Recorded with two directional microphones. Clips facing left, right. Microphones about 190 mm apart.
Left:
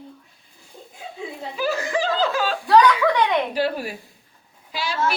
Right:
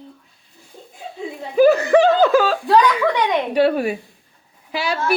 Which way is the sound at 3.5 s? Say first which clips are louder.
Right 7 dB; 60° right (ahead or behind).